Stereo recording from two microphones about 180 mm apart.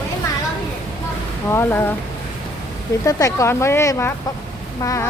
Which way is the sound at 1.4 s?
15° left (ahead or behind).